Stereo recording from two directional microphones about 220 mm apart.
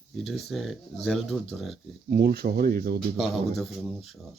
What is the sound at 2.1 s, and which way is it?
Speech, 45° right (ahead or behind).